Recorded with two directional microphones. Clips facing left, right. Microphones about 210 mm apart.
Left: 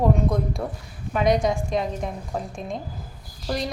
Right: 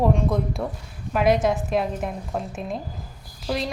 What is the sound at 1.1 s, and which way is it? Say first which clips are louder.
A woman's voice: right 1 dB; 5° right (ahead or behind).